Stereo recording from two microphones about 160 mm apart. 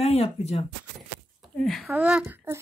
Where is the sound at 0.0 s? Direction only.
40° left (ahead or behind).